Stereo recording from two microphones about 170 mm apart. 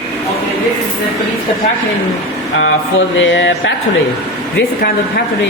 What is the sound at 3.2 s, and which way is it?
Mantra, 90° left.